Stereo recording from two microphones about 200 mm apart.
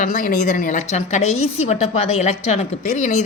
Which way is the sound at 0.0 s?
40° left (ahead or behind).